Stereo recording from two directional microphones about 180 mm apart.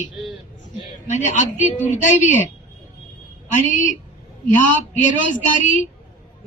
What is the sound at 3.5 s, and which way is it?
Speech, 45° left (ahead or behind).